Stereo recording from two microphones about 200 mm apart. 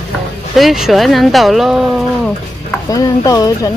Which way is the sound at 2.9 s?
15° left (ahead or behind).